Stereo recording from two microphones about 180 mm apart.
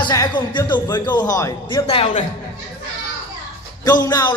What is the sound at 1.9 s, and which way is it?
Speech, 30° left (ahead or behind).